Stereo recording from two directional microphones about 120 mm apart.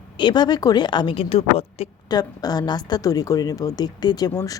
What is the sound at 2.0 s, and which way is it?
Speech, 30° left (ahead or behind).